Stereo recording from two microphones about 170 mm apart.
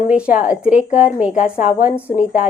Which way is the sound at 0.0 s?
5° right (ahead or behind).